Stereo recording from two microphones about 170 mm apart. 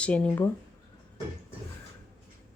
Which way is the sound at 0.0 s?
5° left (ahead or behind).